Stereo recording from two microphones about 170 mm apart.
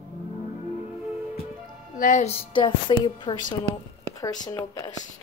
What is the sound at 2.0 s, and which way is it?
Speech, 45° left (ahead or behind).